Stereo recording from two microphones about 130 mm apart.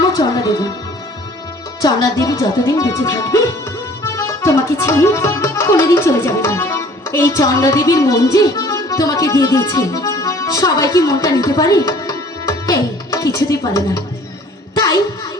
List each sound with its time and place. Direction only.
0.0 s music: 30° left (ahead or behind)
1.8 s speech: 30° left (ahead or behind)
4.0 s music: 25° left (ahead or behind)